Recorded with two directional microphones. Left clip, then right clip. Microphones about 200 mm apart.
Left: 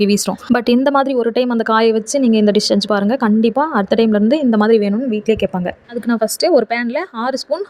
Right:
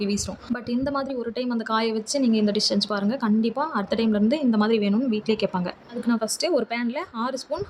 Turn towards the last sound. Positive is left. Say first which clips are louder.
# left 9 dB
turn(degrees=35)  # may be behind; listen again after turning